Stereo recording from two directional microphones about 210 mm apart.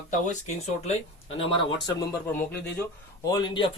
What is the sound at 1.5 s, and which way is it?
Speech, 20° left (ahead or behind).